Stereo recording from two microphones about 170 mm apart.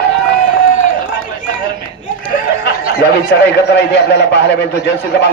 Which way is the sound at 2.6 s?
70° left (ahead or behind).